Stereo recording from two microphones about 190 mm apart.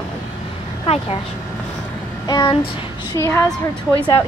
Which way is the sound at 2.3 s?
20° left (ahead or behind).